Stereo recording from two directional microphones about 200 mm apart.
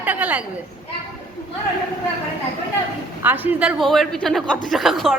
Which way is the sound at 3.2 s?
10° right (ahead or behind).